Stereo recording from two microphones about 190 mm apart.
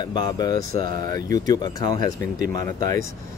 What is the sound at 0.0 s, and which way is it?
Speech, 20° left (ahead or behind).